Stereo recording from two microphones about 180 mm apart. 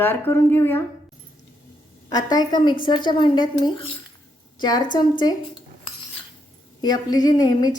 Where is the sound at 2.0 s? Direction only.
20° left (ahead or behind).